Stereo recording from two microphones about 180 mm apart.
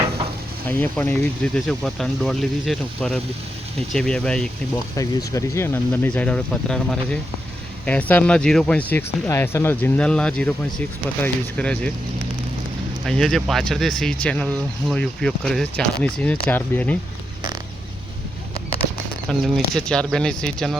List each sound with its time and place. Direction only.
0.7 s speech: 10° left (ahead or behind)
4.9 s speech: 15° left (ahead or behind)
13.1 s speech: 5° left (ahead or behind)
19.3 s speech: centre (ahead or behind)